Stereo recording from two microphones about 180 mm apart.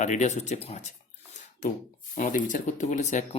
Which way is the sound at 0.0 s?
40° left (ahead or behind).